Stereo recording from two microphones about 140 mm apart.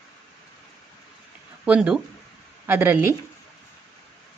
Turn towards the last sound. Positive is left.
turn(degrees=-15)  # may be behind; listen again after turning